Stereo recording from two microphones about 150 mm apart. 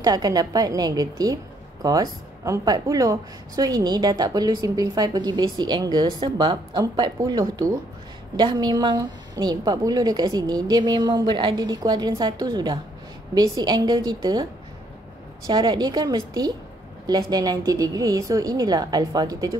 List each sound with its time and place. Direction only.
0.0 s a woman's voice: 25° right (ahead or behind)